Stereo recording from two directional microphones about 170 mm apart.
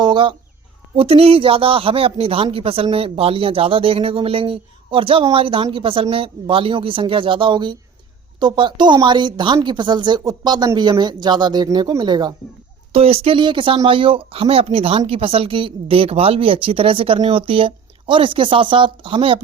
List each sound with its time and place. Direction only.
0.0 s chicken: 30° right (ahead or behind)
0.9 s speech: 35° right (ahead or behind)
12.9 s speech: 35° right (ahead or behind)